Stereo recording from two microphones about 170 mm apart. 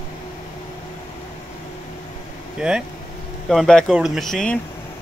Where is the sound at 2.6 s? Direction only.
5° right (ahead or behind).